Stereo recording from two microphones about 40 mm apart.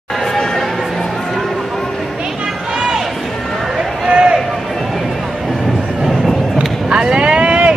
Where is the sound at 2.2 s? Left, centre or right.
Centre.